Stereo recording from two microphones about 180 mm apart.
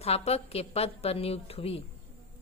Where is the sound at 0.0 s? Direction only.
35° left (ahead or behind).